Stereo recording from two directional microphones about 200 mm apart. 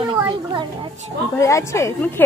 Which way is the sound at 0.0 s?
25° right (ahead or behind).